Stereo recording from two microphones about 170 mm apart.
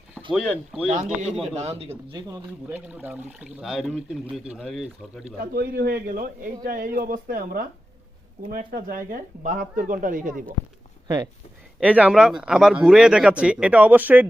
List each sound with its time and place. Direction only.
0.3 s speech: centre (ahead or behind)
0.9 s a man's voice: 40° right (ahead or behind)
2.3 s speech: 10° right (ahead or behind)
5.4 s a man's voice: 60° right (ahead or behind)
11.8 s speech: 10° right (ahead or behind)